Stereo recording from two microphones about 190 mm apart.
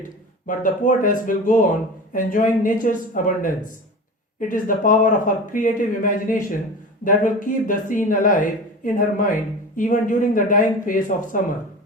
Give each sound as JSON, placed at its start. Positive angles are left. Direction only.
{"t": 0.4, "sound": "speech", "side_deg": 45}